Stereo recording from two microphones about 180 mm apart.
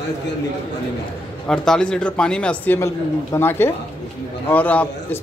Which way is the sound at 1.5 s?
5° left (ahead or behind).